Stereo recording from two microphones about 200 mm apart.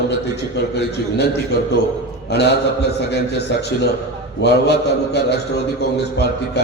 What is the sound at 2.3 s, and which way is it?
A man's voice, 55° left (ahead or behind).